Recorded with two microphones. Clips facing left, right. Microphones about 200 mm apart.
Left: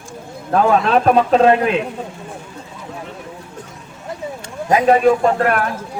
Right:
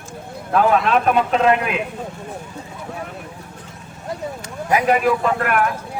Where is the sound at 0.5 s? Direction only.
30° left (ahead or behind).